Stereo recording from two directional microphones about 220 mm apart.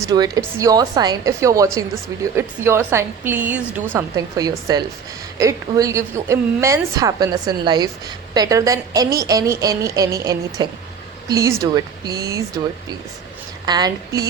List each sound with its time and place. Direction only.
0.0 s a woman's voice: 15° right (ahead or behind)
13.7 s a woman's voice: 20° right (ahead or behind)